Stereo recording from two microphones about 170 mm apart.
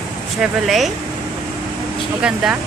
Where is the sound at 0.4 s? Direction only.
Centre (ahead or behind).